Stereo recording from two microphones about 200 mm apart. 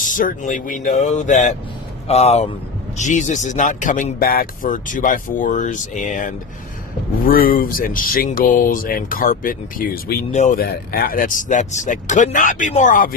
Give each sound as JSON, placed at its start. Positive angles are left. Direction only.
{"t": 0.0, "sound": "speech", "side_deg": 40}
{"t": 10.3, "sound": "speech", "side_deg": 35}
{"t": 10.6, "sound": "speech", "side_deg": 50}